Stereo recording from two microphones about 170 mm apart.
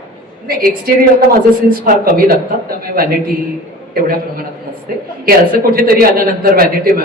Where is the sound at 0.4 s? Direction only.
60° right (ahead or behind).